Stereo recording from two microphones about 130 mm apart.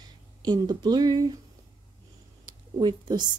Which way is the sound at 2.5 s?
35° right (ahead or behind).